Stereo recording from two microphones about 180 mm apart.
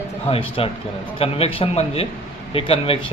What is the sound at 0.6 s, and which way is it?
A man's voice, 30° left (ahead or behind).